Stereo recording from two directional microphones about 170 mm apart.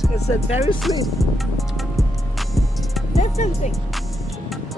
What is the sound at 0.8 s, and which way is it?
Speech, centre (ahead or behind).